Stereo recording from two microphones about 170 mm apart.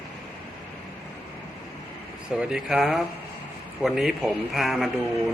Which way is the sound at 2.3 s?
5° right (ahead or behind).